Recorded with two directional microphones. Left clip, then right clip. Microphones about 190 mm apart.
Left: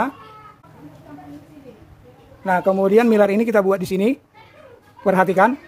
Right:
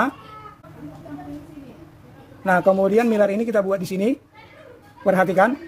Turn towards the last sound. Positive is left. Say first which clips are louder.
# left 2 dB
turn(degrees=15)  # may be behind; listen again after turning